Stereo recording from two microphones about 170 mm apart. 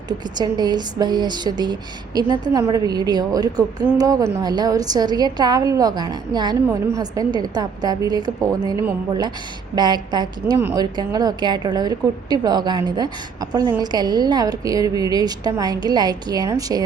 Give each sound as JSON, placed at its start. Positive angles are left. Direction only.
{"t": 0.3, "sound": "speech", "side_deg": -25}